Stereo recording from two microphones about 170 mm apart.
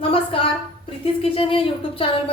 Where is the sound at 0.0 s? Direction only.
30° left (ahead or behind).